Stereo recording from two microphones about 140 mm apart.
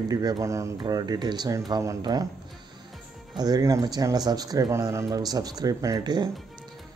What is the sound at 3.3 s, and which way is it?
Speech, 30° right (ahead or behind).